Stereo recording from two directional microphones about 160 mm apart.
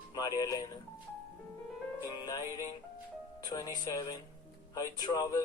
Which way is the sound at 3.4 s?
25° left (ahead or behind).